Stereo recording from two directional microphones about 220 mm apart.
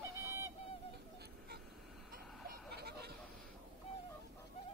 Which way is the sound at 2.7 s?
50° right (ahead or behind).